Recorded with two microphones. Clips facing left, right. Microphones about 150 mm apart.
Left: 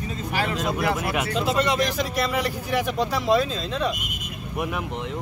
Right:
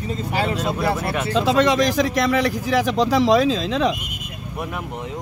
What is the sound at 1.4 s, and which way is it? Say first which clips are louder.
Speech: right 7 dB; 90° right.